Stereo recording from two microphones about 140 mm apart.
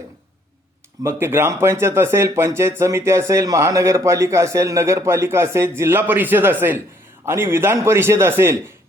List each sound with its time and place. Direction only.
1.0 s a man's voice: 15° right (ahead or behind)